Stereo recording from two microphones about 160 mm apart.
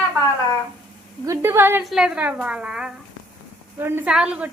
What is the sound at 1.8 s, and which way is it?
A woman's voice, centre (ahead or behind).